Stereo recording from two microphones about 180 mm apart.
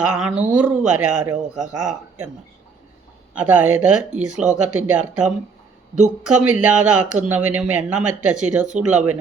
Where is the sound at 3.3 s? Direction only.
5° right (ahead or behind).